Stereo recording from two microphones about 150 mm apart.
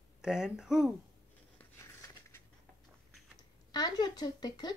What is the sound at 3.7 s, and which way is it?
Speech, 30° left (ahead or behind).